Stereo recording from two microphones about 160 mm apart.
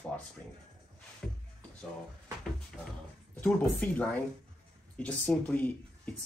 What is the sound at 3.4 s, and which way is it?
Speech, 5° left (ahead or behind).